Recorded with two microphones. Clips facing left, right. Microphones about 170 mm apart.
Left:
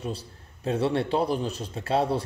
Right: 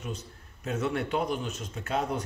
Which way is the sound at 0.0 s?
35° left (ahead or behind).